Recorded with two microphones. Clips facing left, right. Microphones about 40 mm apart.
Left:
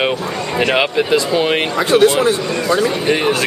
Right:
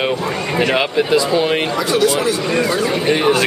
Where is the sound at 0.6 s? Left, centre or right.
Centre.